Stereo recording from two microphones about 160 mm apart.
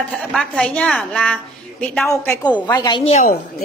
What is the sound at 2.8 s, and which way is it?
Speech, 30° left (ahead or behind).